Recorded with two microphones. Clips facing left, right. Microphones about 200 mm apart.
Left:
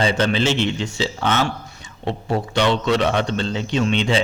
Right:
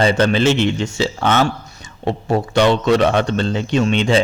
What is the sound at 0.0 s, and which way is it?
A man's voice, 50° right (ahead or behind).